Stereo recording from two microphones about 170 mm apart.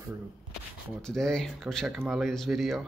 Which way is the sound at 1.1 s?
5° left (ahead or behind).